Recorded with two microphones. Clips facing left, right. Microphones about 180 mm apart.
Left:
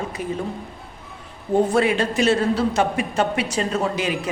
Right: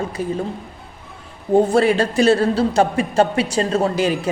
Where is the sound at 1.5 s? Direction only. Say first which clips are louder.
Right 4 dB; 35° right (ahead or behind).